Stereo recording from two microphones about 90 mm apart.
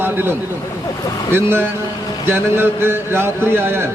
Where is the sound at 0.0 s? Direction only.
25° right (ahead or behind).